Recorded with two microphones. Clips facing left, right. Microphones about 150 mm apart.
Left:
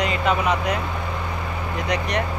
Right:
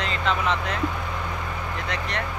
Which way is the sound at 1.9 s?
15° left (ahead or behind).